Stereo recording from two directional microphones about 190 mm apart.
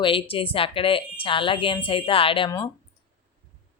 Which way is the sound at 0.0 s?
30° left (ahead or behind).